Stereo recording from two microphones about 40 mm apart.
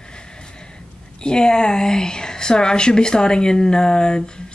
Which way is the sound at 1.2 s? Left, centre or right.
Centre.